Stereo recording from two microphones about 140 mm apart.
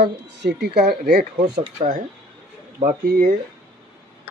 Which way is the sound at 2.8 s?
90° right.